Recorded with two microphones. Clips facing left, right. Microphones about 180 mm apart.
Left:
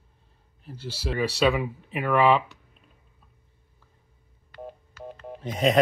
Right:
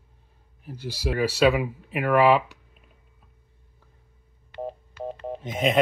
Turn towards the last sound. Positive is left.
turn(degrees=-5)  # may be behind; listen again after turning